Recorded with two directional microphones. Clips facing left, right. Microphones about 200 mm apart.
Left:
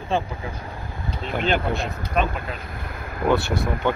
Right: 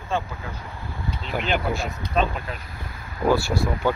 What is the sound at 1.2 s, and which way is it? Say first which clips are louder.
Speech: left 2 dB; centre (ahead or behind).